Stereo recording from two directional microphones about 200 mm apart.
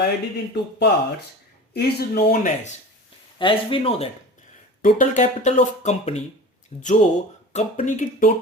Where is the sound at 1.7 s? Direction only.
55° left (ahead or behind).